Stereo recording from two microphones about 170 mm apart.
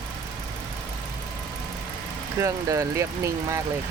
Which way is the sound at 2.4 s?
20° right (ahead or behind).